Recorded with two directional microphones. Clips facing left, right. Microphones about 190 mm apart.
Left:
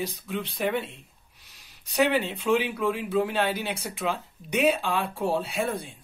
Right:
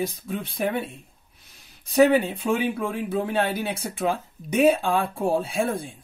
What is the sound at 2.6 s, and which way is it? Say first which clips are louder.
Speech: right 1 dB; 50° right (ahead or behind).